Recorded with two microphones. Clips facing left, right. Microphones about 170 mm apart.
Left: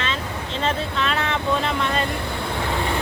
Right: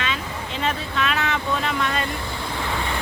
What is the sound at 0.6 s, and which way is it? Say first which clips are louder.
Speech: left 1 dB; 30° left (ahead or behind).